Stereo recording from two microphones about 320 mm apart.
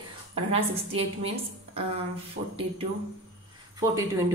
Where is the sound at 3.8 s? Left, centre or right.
Centre.